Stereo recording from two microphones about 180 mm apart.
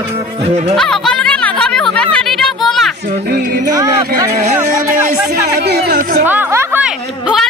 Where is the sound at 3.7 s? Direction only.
20° right (ahead or behind).